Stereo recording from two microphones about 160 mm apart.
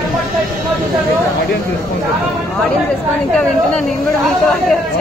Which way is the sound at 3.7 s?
Centre (ahead or behind).